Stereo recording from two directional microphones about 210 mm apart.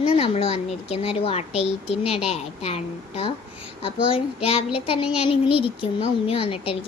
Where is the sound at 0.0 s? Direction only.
25° left (ahead or behind).